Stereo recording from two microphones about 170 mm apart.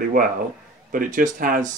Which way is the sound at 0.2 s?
55° right (ahead or behind).